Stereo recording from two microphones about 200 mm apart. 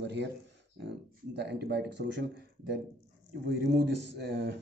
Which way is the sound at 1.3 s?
55° right (ahead or behind).